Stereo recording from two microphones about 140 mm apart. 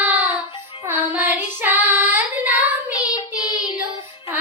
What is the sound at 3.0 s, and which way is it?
Child singing, 30° left (ahead or behind).